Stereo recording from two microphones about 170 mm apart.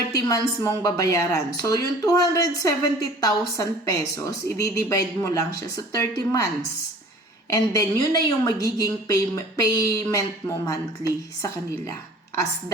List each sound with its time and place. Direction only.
0.1 s a woman's voice: 20° left (ahead or behind)
7.5 s a woman's voice: 20° left (ahead or behind)